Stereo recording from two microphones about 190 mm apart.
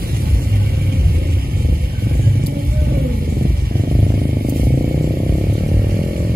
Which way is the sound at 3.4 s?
50° right (ahead or behind).